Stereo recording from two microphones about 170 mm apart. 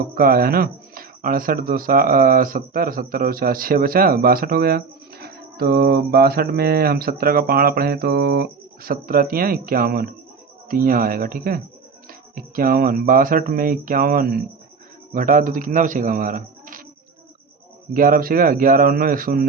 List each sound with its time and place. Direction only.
0.1 s a man's voice: 60° right (ahead or behind)
17.9 s speech: 55° right (ahead or behind)